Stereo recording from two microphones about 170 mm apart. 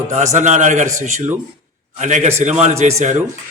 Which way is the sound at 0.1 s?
45° right (ahead or behind).